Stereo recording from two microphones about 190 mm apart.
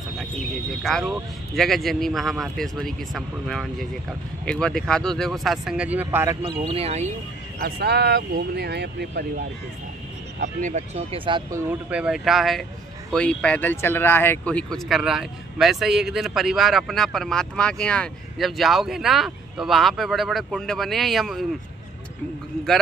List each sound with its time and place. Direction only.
0.2 s speech: 5° left (ahead or behind)
6.4 s speech: 30° right (ahead or behind)
7.6 s speech: 60° right (ahead or behind)
10.4 s speech: 40° right (ahead or behind); by 11.6 s 25° right (ahead or behind)
11.9 s speech: 5° right (ahead or behind)